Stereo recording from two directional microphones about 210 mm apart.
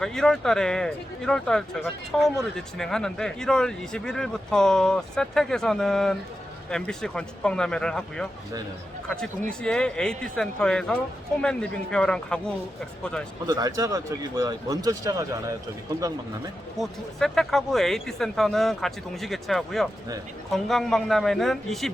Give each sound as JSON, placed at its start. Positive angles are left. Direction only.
{"t": 0.0, "sound": "speech", "side_deg": 0}
{"t": 9.5, "sound": "speech", "side_deg": 5}
{"t": 13.5, "sound": "speech", "side_deg": -15}
{"t": 16.7, "sound": "speech", "side_deg": 0}